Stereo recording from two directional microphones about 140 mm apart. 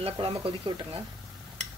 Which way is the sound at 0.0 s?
45° right (ahead or behind).